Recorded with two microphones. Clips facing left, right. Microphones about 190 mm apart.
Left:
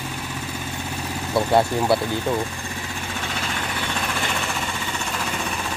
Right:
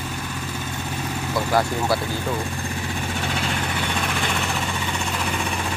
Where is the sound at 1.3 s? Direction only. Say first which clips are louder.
Left 4 dB; 25° left (ahead or behind).